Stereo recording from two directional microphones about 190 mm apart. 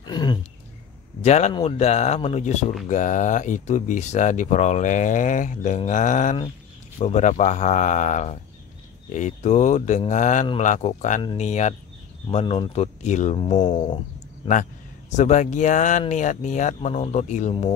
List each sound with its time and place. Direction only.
0.0 s a sound: 20° left (ahead or behind)
1.2 s speech: 35° left (ahead or behind)
14.5 s speech: 40° left (ahead or behind)